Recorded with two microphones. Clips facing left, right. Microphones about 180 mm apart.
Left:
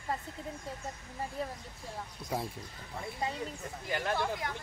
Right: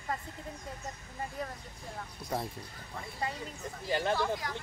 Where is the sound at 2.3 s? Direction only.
5° left (ahead or behind).